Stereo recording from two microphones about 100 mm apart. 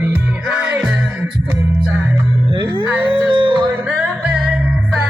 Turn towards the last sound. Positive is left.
turn(degrees=-10)  # may be behind; listen again after turning